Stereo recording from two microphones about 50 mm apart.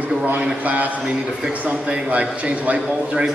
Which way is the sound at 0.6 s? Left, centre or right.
Right.